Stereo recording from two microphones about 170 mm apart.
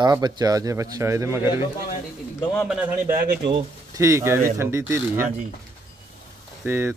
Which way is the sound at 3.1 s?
65° right (ahead or behind).